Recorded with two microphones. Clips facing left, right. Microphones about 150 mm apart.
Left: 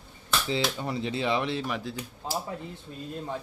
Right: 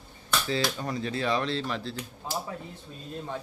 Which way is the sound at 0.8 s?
20° left (ahead or behind).